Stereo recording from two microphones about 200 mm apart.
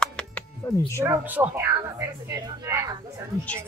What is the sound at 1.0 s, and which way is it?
Speech, 10° right (ahead or behind).